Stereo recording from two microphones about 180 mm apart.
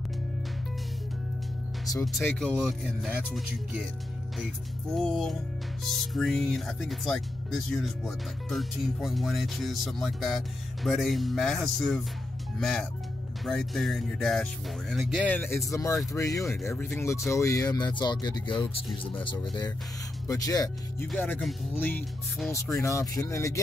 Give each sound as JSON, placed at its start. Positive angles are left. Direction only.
{"t": 2.5, "sound": "speech", "side_deg": -5}
{"t": 4.9, "sound": "speech", "side_deg": 0}
{"t": 15.2, "sound": "speech", "side_deg": 10}
{"t": 20.2, "sound": "speech", "side_deg": 20}